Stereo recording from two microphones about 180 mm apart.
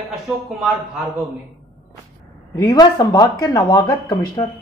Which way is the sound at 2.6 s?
20° left (ahead or behind).